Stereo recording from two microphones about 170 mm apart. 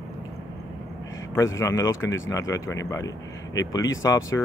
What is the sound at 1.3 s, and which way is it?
Speech, 20° left (ahead or behind).